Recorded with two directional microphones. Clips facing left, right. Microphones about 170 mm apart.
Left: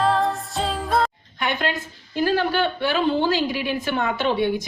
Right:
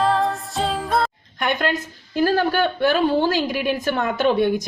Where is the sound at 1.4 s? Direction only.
45° right (ahead or behind).